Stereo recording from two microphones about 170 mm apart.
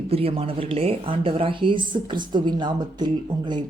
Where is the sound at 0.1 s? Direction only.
35° right (ahead or behind).